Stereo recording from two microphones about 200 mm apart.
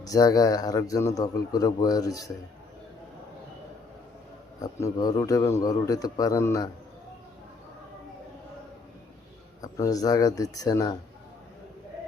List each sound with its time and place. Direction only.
0.0 s a man's voice: 20° left (ahead or behind)
4.6 s a man's voice: 20° left (ahead or behind)
9.6 s a man's voice: 15° left (ahead or behind)